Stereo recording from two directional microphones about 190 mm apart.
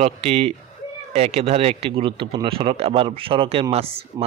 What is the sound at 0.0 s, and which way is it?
A man's voice, 30° right (ahead or behind).